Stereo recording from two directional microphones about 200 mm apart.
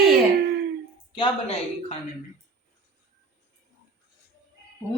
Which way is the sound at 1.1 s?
25° left (ahead or behind).